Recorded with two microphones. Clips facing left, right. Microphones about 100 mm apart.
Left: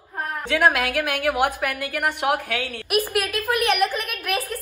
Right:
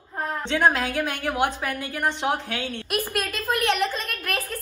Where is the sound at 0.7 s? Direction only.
70° left (ahead or behind).